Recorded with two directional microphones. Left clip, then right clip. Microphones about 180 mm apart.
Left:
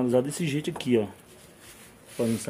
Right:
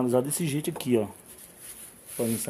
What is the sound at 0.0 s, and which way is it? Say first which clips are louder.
Speech: left 1 dB; 25° right (ahead or behind).